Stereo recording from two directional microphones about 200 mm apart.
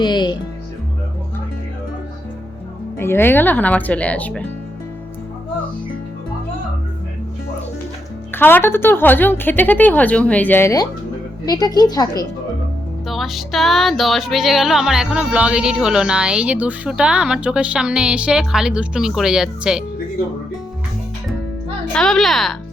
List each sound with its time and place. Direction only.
0.0 s music: 20° left (ahead or behind)
3.0 s speech: 10° left (ahead or behind)
8.3 s speech: 10° left (ahead or behind)
13.1 s music: centre (ahead or behind)
21.9 s music: centre (ahead or behind)